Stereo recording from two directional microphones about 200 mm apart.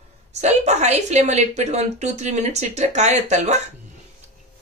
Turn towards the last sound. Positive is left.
turn(degrees=-35)  # may be behind; listen again after turning